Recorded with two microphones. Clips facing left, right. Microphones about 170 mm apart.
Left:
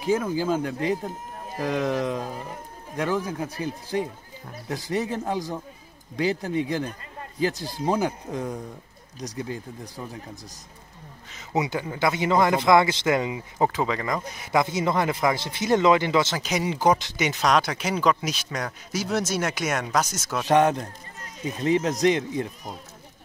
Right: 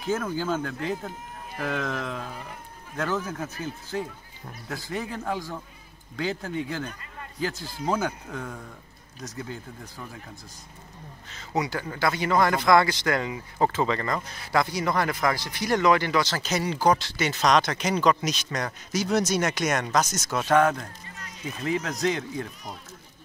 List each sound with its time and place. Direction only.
0.0 s speech: 10° left (ahead or behind)
6.8 s a man's voice: 35° left (ahead or behind)
7.8 s speech: 20° left (ahead or behind)
11.5 s speech: 25° left (ahead or behind); by 20.4 s 5° left (ahead or behind)
20.4 s speech: 20° left (ahead or behind)